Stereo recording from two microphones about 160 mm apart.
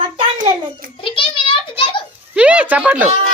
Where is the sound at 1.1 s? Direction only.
35° left (ahead or behind).